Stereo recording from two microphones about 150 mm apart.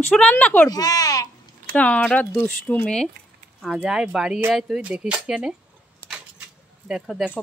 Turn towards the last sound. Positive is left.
turn(degrees=0)  # may be behind; listen again after turning